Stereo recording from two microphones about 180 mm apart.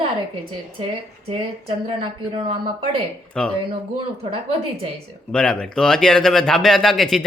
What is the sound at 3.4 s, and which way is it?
Speech, 5° left (ahead or behind).